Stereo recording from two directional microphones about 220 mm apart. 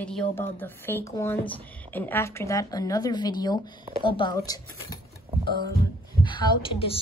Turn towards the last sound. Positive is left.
turn(degrees=25)  # may be behind; listen again after turning